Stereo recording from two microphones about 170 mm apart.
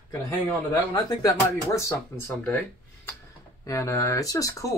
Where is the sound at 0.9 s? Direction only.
20° left (ahead or behind).